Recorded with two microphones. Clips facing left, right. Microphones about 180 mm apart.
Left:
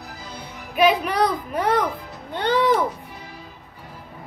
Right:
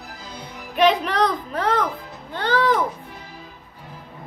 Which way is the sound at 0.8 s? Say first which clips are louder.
Even; 10° left (ahead or behind).